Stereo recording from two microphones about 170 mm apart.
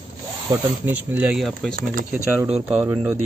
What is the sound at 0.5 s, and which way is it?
Speech, 10° right (ahead or behind).